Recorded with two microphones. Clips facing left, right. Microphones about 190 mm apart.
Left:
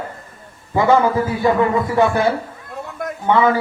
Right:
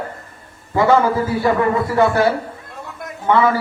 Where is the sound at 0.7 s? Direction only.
20° left (ahead or behind).